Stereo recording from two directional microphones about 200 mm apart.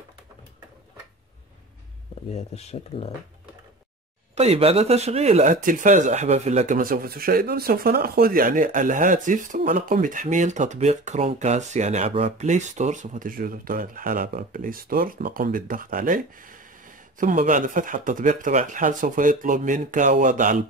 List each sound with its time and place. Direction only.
2.3 s speech: 30° left (ahead or behind)
4.4 s speech: 30° right (ahead or behind)